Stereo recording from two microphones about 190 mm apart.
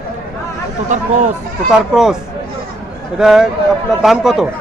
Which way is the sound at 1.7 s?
Centre (ahead or behind).